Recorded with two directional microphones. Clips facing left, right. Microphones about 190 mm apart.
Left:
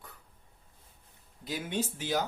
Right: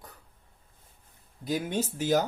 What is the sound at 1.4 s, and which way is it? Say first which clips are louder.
Speech: right 4 dB; 40° right (ahead or behind).